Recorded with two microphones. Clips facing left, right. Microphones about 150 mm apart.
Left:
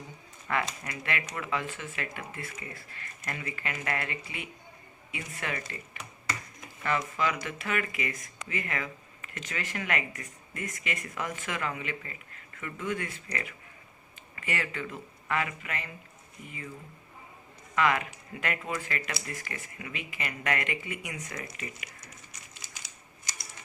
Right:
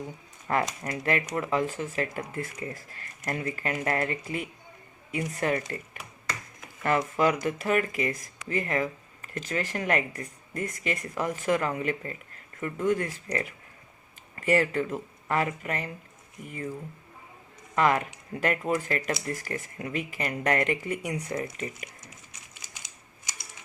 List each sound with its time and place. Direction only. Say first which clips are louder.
0.4 s speech: right 4 dB; 40° right (ahead or behind)
7.2 s speech: right 6 dB; 45° right (ahead or behind)
17.7 s speech: right 3 dB; 40° right (ahead or behind)